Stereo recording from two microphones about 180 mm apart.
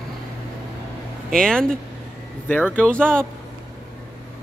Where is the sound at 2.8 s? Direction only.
5° left (ahead or behind).